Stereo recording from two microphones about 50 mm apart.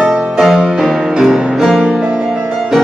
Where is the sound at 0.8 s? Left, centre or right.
Centre.